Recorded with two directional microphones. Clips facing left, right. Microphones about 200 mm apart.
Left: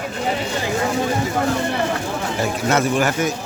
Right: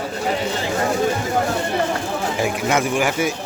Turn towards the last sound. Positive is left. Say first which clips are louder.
# left 1 dB
turn(degrees=-10)  # may be behind; listen again after turning